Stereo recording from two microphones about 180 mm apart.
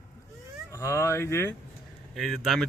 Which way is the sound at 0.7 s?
15° left (ahead or behind).